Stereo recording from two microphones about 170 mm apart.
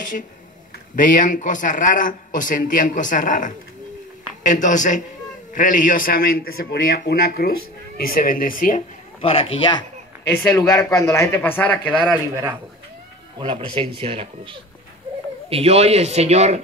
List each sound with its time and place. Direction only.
0.9 s speech: 50° left (ahead or behind)
9.2 s speech: 35° left (ahead or behind)
10.2 s speech: 15° left (ahead or behind)
13.4 s speech: 30° right (ahead or behind)